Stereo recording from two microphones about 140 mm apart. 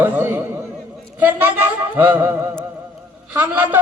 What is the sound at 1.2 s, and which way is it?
A man's voice, 15° right (ahead or behind).